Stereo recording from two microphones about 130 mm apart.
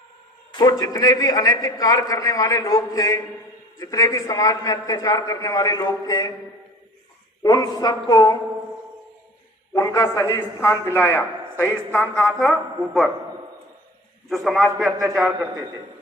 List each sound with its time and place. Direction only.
0.5 s a man's voice: 30° left (ahead or behind)
7.4 s a woman's voice: 30° left (ahead or behind)
9.7 s a man's voice: 25° left (ahead or behind); by 13.1 s 5° left (ahead or behind)
14.3 s a man's voice: centre (ahead or behind)